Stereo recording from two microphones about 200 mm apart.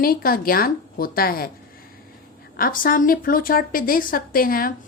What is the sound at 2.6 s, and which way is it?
A woman's voice, 45° left (ahead or behind).